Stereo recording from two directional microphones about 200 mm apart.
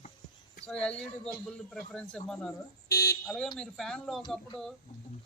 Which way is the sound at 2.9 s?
50° left (ahead or behind).